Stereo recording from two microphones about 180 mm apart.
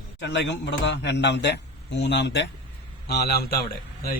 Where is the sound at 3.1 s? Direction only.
60° left (ahead or behind).